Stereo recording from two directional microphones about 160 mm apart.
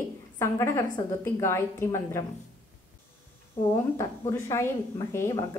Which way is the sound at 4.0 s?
20° left (ahead or behind).